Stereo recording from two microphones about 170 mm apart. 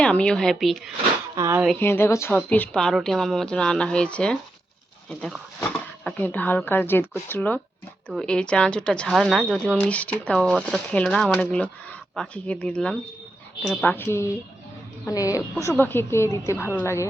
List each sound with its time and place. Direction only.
0.0 s speech: 5° left (ahead or behind)
1.4 s speech: 15° right (ahead or behind)
1.8 s speech: 15° left (ahead or behind)
5.5 s speech: 10° left (ahead or behind)